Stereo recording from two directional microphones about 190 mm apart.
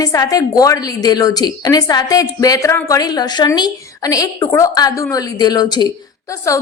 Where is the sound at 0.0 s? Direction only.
20° left (ahead or behind).